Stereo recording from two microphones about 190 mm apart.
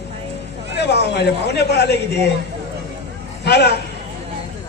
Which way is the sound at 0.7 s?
60° left (ahead or behind).